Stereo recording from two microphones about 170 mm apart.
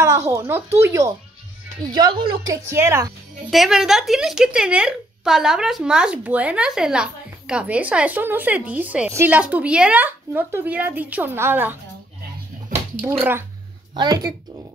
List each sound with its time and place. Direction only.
0.3 s speech: 15° right (ahead or behind)
2.5 s speech: 15° right (ahead or behind)
3.4 s speech: centre (ahead or behind)
13.9 s speech: 25° right (ahead or behind)